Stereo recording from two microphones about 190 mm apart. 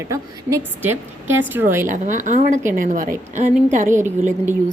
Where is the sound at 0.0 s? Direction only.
15° right (ahead or behind).